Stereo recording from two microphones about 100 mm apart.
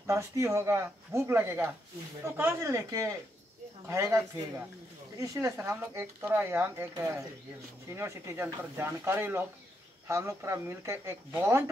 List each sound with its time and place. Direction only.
0.0 s speech: 30° right (ahead or behind)
5.7 s speech: 25° right (ahead or behind)
7.9 s speech: 25° right (ahead or behind)